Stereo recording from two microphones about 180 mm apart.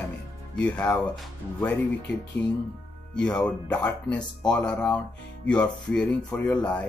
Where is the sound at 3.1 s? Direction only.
5° left (ahead or behind).